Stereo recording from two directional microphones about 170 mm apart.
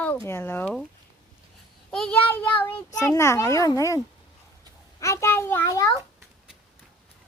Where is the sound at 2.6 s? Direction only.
15° left (ahead or behind).